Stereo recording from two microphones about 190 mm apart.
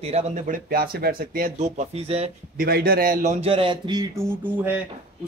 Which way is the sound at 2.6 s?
50° right (ahead or behind).